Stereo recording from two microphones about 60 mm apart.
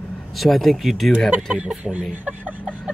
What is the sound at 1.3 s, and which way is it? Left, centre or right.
Speech, right.